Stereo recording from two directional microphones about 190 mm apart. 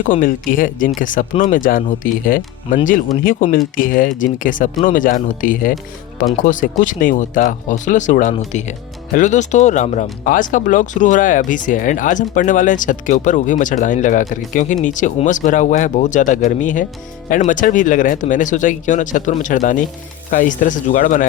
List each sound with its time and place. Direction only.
0.0 s speech: 45° left (ahead or behind)